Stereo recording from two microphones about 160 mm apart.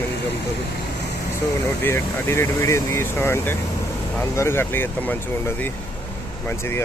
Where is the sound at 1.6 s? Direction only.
15° left (ahead or behind).